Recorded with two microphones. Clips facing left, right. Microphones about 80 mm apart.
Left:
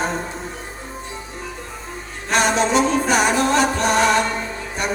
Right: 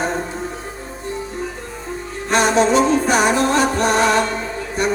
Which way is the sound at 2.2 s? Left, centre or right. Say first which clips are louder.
Right 3 dB; right.